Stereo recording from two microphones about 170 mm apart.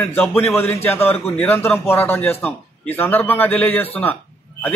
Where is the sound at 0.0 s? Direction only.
5° left (ahead or behind).